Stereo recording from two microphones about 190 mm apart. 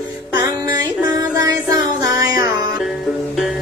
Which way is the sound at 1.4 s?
20° right (ahead or behind).